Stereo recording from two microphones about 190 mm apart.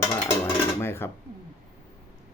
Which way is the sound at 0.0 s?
10° left (ahead or behind).